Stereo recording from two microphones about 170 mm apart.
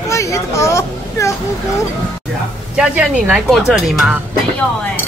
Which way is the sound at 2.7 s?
5° right (ahead or behind).